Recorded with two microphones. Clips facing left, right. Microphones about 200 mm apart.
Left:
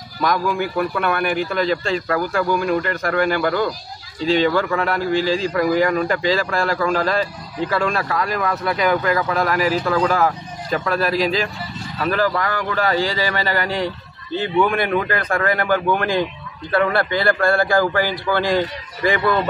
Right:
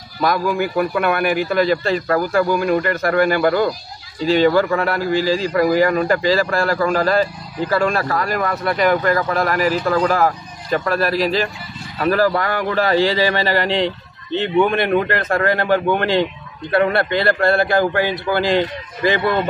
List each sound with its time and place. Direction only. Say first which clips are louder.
0.2 s speech: right 2 dB; 5° right (ahead or behind)
12.0 s speech: right 3 dB; 40° right (ahead or behind)